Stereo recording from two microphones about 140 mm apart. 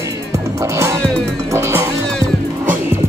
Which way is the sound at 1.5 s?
20° right (ahead or behind).